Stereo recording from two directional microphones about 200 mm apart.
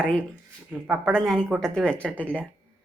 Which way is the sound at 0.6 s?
5° right (ahead or behind).